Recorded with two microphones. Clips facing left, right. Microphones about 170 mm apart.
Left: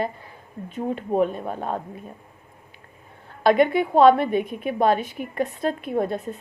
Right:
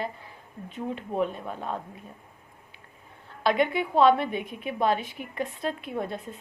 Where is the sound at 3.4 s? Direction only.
50° left (ahead or behind).